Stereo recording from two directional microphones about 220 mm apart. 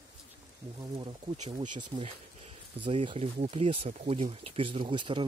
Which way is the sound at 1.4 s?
20° right (ahead or behind).